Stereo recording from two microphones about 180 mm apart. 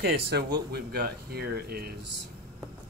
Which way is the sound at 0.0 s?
65° right (ahead or behind).